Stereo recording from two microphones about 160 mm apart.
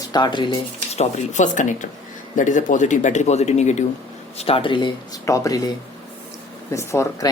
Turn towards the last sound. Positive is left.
turn(degrees=20)  # may be behind; listen again after turning